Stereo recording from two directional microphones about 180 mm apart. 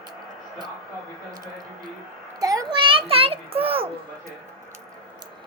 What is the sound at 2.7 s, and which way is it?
A child's voice, 30° right (ahead or behind).